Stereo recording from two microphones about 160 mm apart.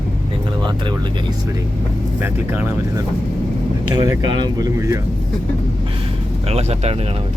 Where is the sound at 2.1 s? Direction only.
15° right (ahead or behind).